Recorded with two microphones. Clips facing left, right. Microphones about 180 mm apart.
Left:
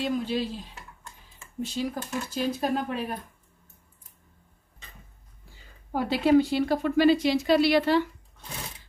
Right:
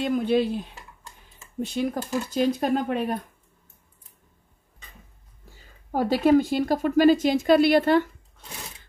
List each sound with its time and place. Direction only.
0.0 s speech: 55° right (ahead or behind)
5.9 s a woman's voice: 45° right (ahead or behind)